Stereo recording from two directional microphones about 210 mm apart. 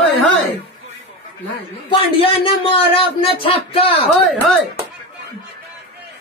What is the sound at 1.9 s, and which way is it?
Speech, 25° left (ahead or behind).